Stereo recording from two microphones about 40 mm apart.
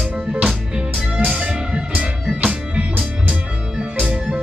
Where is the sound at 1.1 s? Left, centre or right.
Centre.